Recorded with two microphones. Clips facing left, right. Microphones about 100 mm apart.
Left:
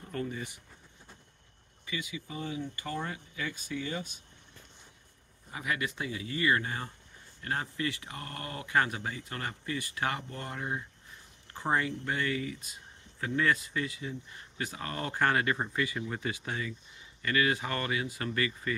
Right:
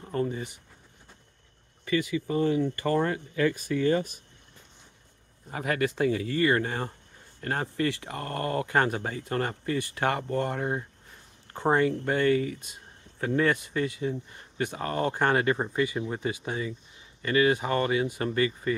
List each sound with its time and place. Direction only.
0.0 s speech: 30° right (ahead or behind)
1.9 s speech: 60° right (ahead or behind)
5.5 s speech: 45° right (ahead or behind); by 18.8 s 30° right (ahead or behind)